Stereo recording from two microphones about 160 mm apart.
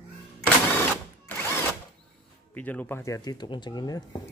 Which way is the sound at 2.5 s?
10° left (ahead or behind).